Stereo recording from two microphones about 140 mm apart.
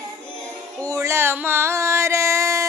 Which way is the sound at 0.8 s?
20° right (ahead or behind).